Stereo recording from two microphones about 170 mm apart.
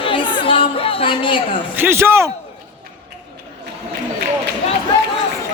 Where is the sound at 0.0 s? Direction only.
30° left (ahead or behind).